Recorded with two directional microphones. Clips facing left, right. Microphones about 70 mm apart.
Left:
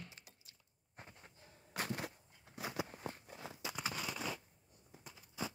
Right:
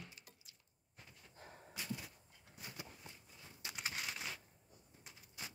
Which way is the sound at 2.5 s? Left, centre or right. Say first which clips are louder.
Left 10 dB; left.